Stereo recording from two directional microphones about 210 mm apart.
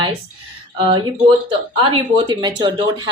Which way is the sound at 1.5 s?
20° right (ahead or behind).